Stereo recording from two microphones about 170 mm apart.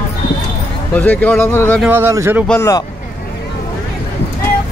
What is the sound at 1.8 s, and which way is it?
Speech, 15° right (ahead or behind).